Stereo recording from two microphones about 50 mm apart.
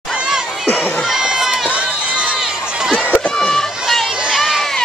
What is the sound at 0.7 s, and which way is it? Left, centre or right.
Speech, left.